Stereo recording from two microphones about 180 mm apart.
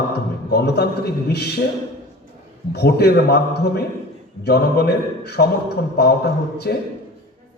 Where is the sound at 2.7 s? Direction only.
65° left (ahead or behind).